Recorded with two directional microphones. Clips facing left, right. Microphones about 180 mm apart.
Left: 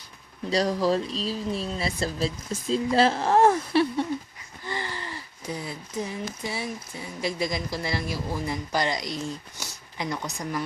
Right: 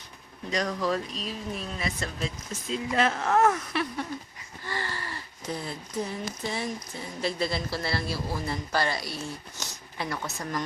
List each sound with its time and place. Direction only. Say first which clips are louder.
0.5 s speech: left 5 dB; 30° left (ahead or behind)
4.6 s speech: left 2 dB; 15° left (ahead or behind)